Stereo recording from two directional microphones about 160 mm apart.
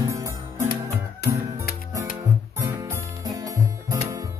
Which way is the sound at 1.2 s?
90° left.